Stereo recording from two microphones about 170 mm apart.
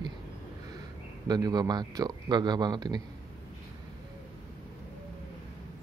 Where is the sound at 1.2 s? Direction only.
25° right (ahead or behind).